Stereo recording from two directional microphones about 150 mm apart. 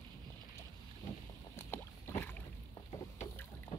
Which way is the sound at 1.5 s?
15° left (ahead or behind).